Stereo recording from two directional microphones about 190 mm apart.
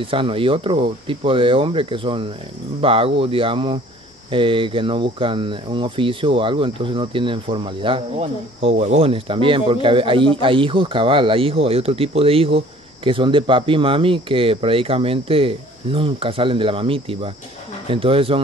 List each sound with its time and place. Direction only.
0.0 s speech: 30° right (ahead or behind)